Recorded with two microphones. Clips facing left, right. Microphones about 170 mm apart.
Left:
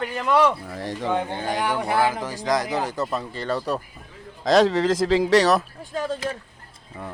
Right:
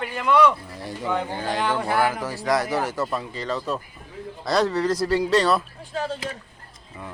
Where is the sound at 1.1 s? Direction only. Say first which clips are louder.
Even; 20° left (ahead or behind).